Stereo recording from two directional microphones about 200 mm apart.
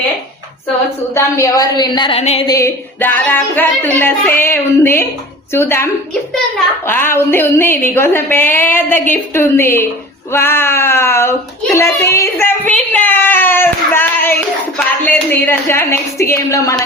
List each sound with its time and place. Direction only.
1.1 s a woman's voice: 15° left (ahead or behind)
2.5 s speech: 15° left (ahead or behind)